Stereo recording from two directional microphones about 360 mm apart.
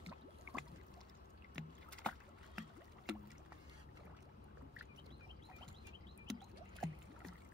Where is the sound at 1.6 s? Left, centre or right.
Centre.